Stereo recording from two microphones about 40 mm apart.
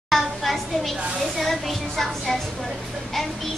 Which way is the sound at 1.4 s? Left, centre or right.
Centre.